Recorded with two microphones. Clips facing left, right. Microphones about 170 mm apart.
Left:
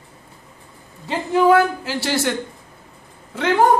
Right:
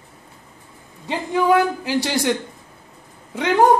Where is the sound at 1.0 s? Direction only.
15° right (ahead or behind).